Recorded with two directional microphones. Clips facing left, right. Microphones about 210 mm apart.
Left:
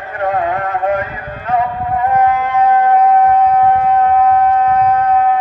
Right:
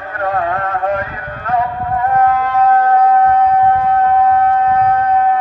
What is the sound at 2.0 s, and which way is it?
Shofar, 10° left (ahead or behind).